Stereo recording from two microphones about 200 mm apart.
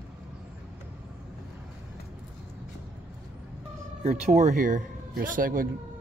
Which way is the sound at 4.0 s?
35° right (ahead or behind).